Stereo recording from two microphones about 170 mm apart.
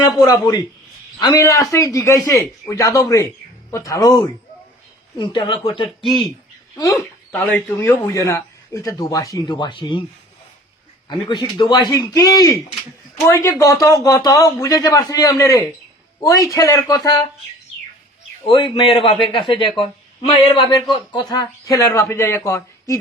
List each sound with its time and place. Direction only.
0.2 s speech: 25° left (ahead or behind)
11.1 s speech: 25° left (ahead or behind)
18.4 s speech: 30° left (ahead or behind)